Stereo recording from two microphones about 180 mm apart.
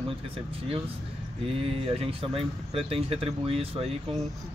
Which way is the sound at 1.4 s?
30° right (ahead or behind).